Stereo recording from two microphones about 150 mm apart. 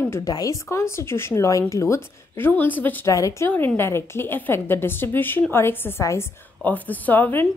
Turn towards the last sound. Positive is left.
turn(degrees=15)  # may be behind; listen again after turning